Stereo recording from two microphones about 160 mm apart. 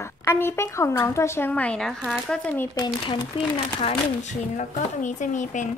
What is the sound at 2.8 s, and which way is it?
Speech, 25° left (ahead or behind).